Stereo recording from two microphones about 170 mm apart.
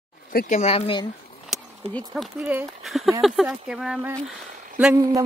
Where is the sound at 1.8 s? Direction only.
35° right (ahead or behind).